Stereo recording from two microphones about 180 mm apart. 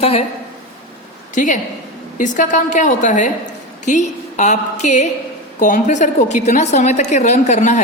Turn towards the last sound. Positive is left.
turn(degrees=40)  # may be behind; listen again after turning